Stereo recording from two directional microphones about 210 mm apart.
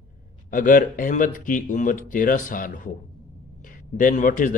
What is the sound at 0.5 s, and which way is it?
Speech, 40° left (ahead or behind).